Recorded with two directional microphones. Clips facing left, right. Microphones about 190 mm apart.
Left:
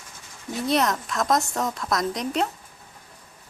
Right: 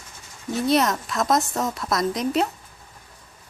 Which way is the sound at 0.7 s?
Centre (ahead or behind).